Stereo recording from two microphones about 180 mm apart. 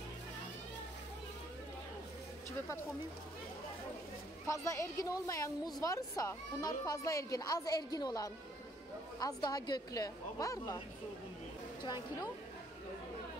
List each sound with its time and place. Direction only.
4.5 s a woman's voice: 15° left (ahead or behind)
11.8 s a woman's voice: 25° left (ahead or behind)